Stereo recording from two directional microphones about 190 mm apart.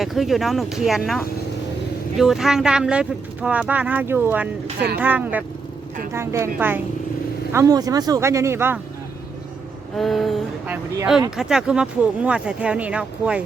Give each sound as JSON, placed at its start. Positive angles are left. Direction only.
{"t": 0.0, "sound": "speech", "side_deg": 0}
{"t": 10.0, "sound": "speech", "side_deg": 0}